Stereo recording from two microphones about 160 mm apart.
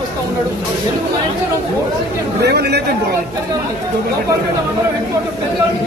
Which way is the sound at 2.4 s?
90° right.